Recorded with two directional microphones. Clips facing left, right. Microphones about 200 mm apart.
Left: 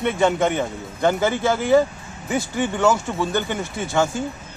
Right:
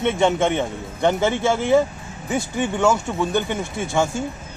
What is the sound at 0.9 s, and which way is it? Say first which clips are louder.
Speech: even; 20° right (ahead or behind).